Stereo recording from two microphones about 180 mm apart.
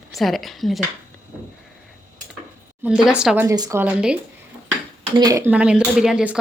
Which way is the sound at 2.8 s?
5° right (ahead or behind).